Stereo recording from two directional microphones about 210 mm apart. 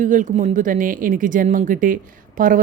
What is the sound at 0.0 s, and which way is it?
Speech, 35° right (ahead or behind).